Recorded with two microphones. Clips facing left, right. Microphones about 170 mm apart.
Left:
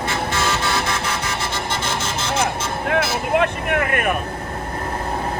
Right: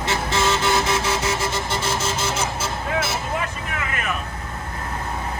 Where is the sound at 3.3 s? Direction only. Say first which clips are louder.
Left 9 dB; 65° left (ahead or behind).